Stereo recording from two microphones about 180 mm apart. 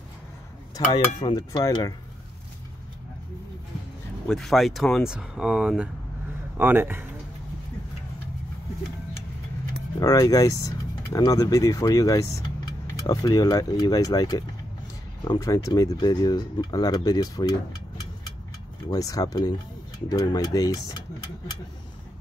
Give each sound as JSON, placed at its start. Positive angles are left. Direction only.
{"t": 0.7, "sound": "speech", "side_deg": 25}
{"t": 4.3, "sound": "speech", "side_deg": 0}
{"t": 9.9, "sound": "speech", "side_deg": 20}
{"t": 18.9, "sound": "speech", "side_deg": 20}